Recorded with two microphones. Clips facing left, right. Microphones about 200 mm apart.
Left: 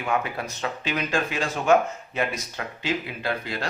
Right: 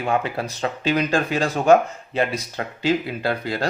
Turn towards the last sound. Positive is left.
turn(degrees=-35)  # may be behind; listen again after turning